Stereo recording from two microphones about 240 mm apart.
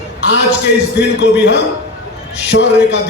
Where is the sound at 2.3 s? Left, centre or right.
Left.